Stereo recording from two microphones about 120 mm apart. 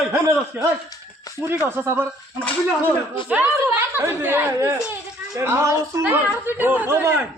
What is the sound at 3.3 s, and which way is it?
A woman's voice, 15° right (ahead or behind).